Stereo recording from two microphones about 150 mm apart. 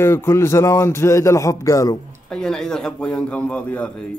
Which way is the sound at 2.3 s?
5° left (ahead or behind).